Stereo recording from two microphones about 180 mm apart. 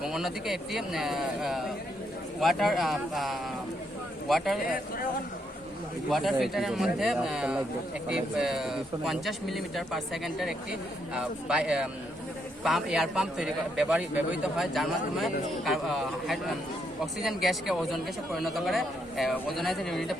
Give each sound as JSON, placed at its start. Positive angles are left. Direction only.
{"t": 0.0, "sound": "speech", "side_deg": 0}
{"t": 4.6, "sound": "speech", "side_deg": 50}
{"t": 6.1, "sound": "speech", "side_deg": 0}